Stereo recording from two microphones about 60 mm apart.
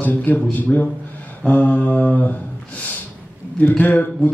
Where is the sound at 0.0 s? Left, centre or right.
Left.